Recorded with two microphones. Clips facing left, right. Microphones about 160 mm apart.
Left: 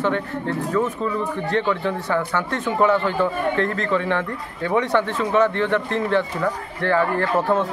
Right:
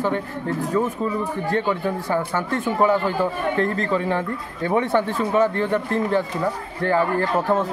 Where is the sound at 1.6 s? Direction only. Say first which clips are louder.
Even; 15° right (ahead or behind).